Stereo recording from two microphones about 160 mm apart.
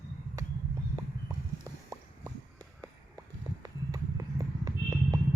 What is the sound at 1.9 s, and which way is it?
Clip-clop, 20° right (ahead or behind).